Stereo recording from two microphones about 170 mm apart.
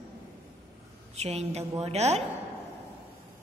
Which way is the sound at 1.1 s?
40° right (ahead or behind).